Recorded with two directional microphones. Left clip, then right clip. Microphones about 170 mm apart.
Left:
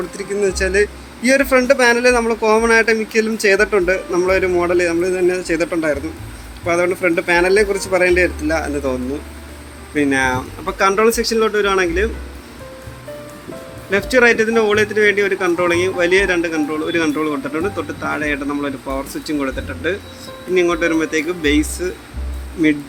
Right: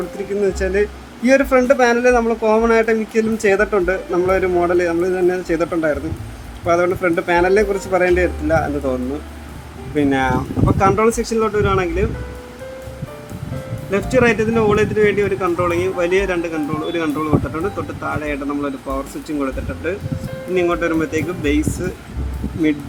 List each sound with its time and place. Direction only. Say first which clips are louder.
0.6 s a man's voice: left 2 dB; 10° right (ahead or behind)
9.9 s a man's voice: left 1 dB; 15° right (ahead or behind); by 12.0 s centre (ahead or behind)
13.9 s speech: left 3 dB; centre (ahead or behind)